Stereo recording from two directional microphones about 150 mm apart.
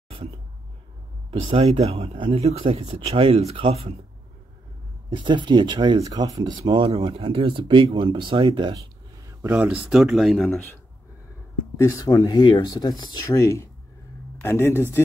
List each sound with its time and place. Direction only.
1.4 s speech: 40° right (ahead or behind)
5.1 s speech: 30° right (ahead or behind)
6.6 s speech: 40° right (ahead or behind)
9.5 s speech: 5° right (ahead or behind)
11.8 s speech: 25° left (ahead or behind)